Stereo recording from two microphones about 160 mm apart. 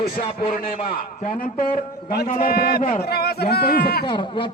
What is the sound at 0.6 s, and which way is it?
A man's voice, 60° left (ahead or behind).